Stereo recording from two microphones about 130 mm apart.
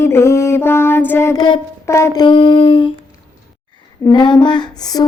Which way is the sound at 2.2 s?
40° left (ahead or behind).